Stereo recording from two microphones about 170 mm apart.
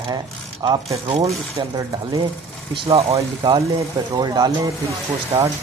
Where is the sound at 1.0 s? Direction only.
35° right (ahead or behind).